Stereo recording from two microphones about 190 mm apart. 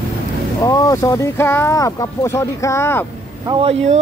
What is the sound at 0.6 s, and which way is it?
Speech, 15° left (ahead or behind).